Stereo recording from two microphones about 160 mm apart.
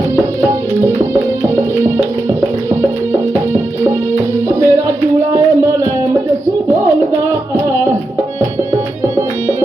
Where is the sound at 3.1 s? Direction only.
15° right (ahead or behind).